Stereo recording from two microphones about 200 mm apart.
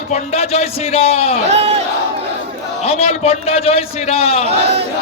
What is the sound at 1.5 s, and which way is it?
Crowd, 30° right (ahead or behind).